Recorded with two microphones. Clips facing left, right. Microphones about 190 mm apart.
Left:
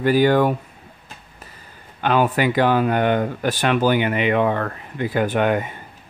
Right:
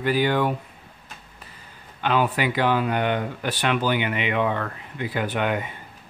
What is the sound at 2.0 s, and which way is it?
Speech, 45° left (ahead or behind).